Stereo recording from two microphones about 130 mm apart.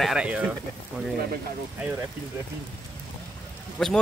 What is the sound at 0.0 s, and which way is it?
Speech, 5° right (ahead or behind).